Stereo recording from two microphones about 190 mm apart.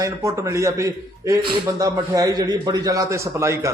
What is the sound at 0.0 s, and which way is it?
A man's voice, 15° right (ahead or behind).